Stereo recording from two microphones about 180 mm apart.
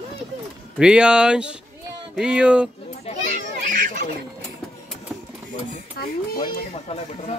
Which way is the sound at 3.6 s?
50° right (ahead or behind).